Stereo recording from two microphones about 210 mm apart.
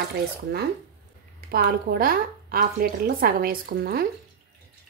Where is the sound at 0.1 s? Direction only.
50° right (ahead or behind).